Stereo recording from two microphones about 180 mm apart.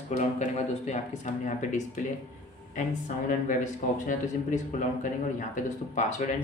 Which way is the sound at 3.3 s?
45° left (ahead or behind).